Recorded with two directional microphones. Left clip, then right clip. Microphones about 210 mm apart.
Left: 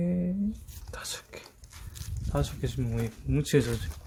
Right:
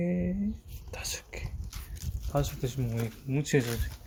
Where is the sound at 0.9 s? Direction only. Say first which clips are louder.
Right 1 dB; 10° left (ahead or behind).